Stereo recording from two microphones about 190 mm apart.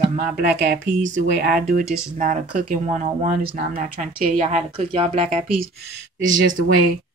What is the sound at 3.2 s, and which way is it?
Speech, 35° right (ahead or behind).